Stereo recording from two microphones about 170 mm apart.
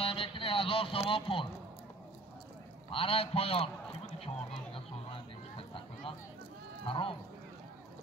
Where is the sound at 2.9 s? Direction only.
35° left (ahead or behind).